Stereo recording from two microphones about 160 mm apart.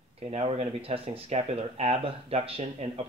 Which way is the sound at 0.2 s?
45° right (ahead or behind).